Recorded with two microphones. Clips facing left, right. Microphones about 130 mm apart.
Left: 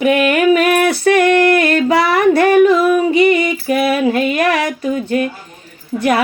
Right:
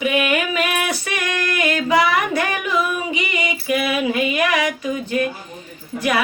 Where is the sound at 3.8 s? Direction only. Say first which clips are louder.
Left 6 dB; 40° left (ahead or behind).